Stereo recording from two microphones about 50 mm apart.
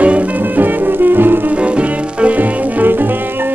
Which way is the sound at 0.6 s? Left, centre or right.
Right.